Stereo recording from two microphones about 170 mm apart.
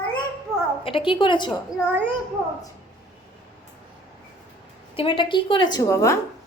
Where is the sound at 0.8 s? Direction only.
30° left (ahead or behind).